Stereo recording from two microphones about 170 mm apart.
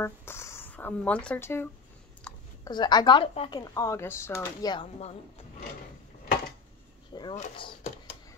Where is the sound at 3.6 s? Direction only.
20° left (ahead or behind).